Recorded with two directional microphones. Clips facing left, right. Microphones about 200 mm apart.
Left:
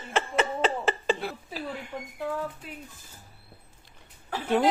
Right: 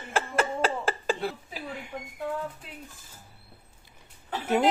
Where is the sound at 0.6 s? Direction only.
Centre (ahead or behind).